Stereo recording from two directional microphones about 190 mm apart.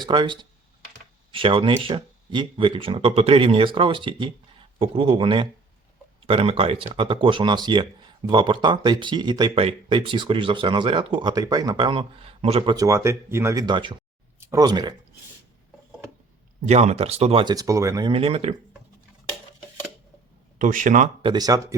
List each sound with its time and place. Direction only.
0.0 s speech: 25° right (ahead or behind)
12.7 s speech: 15° right (ahead or behind)
16.6 s speech: 35° right (ahead or behind); by 18.1 s 15° right (ahead or behind)
18.1 s speech: 30° right (ahead or behind)
20.6 s speech: 45° right (ahead or behind)
21.2 s speech: 25° right (ahead or behind)